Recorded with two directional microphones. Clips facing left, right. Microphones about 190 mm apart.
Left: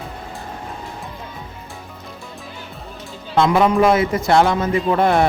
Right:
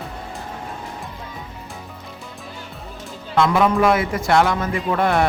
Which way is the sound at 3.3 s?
25° left (ahead or behind).